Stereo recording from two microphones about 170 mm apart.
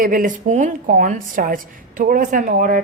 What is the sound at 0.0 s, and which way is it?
Speech, 55° right (ahead or behind).